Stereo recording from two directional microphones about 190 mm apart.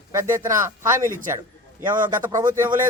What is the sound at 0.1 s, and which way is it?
Speech, 15° right (ahead or behind).